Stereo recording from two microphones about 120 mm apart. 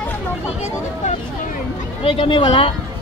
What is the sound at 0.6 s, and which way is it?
Vehicle, 65° left (ahead or behind).